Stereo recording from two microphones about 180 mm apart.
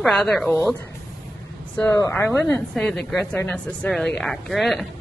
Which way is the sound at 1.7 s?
15° left (ahead or behind).